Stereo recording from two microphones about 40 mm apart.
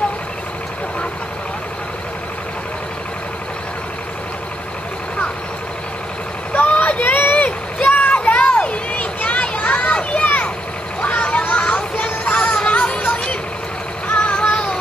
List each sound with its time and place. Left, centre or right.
6.7 s a sound: left
8.2 s children playing: left
10.1 s vehicle: left
12.4 s music: left
14.0 s child singing: left